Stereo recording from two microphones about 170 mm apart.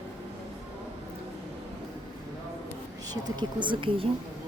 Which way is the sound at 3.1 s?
25° right (ahead or behind).